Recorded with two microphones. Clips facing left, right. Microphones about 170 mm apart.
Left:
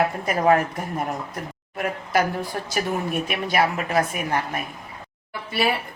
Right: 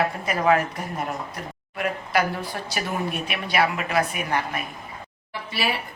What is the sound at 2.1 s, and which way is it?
A woman's voice, 45° left (ahead or behind).